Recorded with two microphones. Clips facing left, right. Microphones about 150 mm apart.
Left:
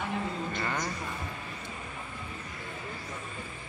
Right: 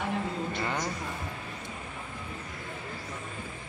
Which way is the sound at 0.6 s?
10° right (ahead or behind).